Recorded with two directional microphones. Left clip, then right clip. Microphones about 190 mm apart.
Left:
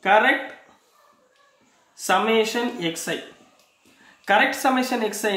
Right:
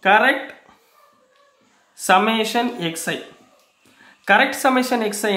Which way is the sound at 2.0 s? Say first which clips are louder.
Right 3 dB; 40° right (ahead or behind).